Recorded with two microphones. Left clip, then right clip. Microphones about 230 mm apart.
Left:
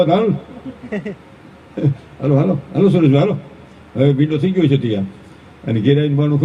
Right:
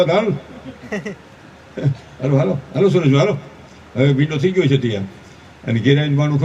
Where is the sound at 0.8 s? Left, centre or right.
Right.